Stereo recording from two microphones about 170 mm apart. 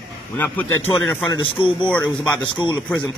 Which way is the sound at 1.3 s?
30° left (ahead or behind).